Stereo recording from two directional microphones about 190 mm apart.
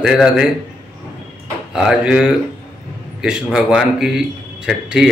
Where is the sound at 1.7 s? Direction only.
5° right (ahead or behind).